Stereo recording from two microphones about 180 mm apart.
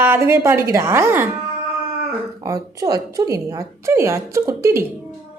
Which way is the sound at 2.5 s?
20° right (ahead or behind).